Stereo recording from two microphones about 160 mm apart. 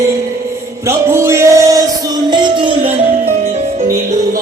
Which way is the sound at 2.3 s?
30° right (ahead or behind).